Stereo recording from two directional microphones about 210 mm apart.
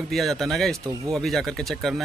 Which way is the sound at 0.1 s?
Centre (ahead or behind).